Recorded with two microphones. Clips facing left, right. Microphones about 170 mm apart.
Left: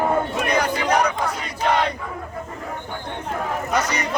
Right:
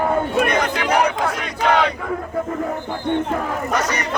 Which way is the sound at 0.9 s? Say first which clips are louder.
Right 5 dB; 70° right (ahead or behind).